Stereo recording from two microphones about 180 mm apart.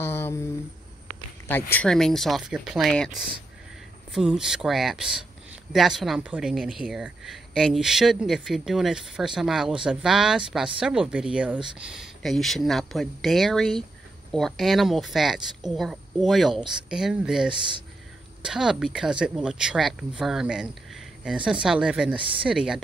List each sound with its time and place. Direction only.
0.0 s a sound: 15° left (ahead or behind)
1.5 s speech: 10° left (ahead or behind)
17.5 s speech: 25° right (ahead or behind)
18.4 s speech: 5° right (ahead or behind)